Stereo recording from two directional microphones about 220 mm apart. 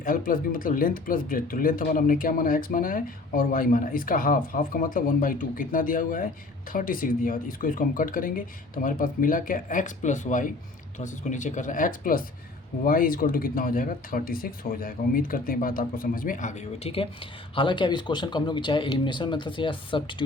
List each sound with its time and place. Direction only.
0.0 s speech: 40° left (ahead or behind); by 20.2 s 20° left (ahead or behind)